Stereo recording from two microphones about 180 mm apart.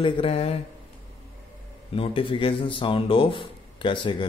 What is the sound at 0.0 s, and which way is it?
Speech, 35° left (ahead or behind).